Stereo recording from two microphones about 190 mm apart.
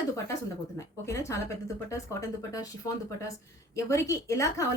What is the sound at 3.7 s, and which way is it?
Speech, 15° left (ahead or behind).